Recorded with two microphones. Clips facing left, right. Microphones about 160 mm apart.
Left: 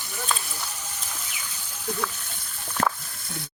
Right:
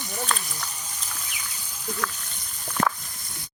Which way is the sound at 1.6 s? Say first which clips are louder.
Left 3 dB; 10° right (ahead or behind).